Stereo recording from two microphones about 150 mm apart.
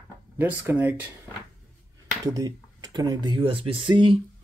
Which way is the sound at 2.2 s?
25° right (ahead or behind).